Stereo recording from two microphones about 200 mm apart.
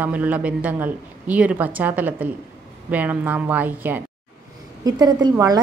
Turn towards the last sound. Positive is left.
turn(degrees=-20)  # may be behind; listen again after turning